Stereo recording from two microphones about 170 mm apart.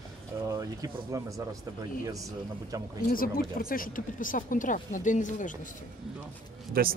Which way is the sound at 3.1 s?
55° left (ahead or behind).